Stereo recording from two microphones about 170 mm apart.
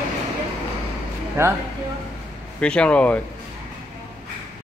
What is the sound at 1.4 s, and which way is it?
Speech, 15° right (ahead or behind).